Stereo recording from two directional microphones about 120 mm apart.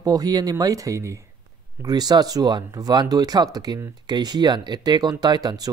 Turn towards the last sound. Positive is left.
turn(degrees=-35)  # may be behind; listen again after turning